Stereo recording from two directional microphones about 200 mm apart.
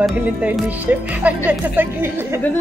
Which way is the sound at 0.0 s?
5° right (ahead or behind).